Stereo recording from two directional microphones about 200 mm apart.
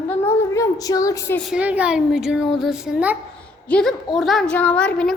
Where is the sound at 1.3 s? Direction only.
Centre (ahead or behind).